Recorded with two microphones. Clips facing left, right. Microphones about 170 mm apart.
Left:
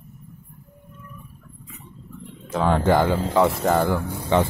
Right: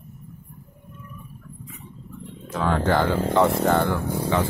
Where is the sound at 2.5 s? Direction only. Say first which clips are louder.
Left 3 dB; 25° left (ahead or behind).